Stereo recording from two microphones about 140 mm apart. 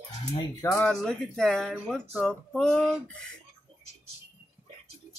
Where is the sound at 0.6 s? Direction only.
20° left (ahead or behind).